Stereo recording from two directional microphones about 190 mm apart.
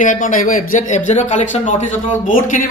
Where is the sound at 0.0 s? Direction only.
45° left (ahead or behind).